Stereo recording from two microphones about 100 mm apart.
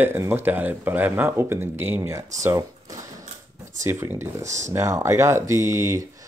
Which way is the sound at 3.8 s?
25° right (ahead or behind).